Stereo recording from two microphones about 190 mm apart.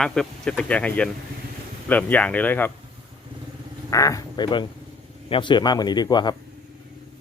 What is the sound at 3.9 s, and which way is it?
Speech, 15° left (ahead or behind).